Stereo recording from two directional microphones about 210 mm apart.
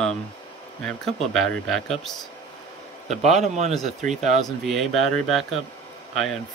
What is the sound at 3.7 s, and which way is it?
Speech, centre (ahead or behind).